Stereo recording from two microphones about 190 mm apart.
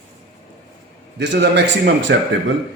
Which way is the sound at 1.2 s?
65° right (ahead or behind).